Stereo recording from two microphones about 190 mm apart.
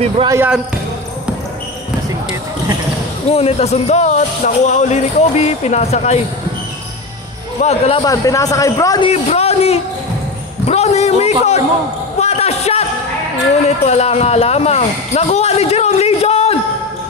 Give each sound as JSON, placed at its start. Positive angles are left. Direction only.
{"t": 0.3, "sound": "speech", "side_deg": -10}
{"t": 3.3, "sound": "speech", "side_deg": 30}
{"t": 7.6, "sound": "speech", "side_deg": 35}
{"t": 8.0, "sound": "a man's voice", "side_deg": 20}
{"t": 9.1, "sound": "a man's voice", "side_deg": 35}
{"t": 12.2, "sound": "a sound", "side_deg": 35}
{"t": 13.7, "sound": "speech", "side_deg": 35}